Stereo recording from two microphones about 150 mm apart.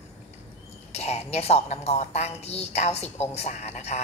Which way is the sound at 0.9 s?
45° left (ahead or behind).